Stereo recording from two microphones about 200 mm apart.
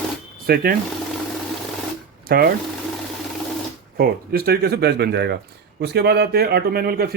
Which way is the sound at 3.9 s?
50° right (ahead or behind).